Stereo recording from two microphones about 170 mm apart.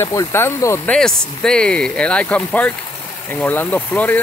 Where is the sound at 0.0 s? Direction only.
15° left (ahead or behind).